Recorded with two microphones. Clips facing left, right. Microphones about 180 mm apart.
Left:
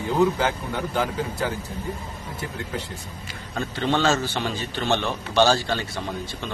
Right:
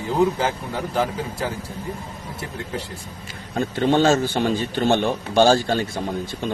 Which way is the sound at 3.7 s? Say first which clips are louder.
Right 5 dB; 45° right (ahead or behind).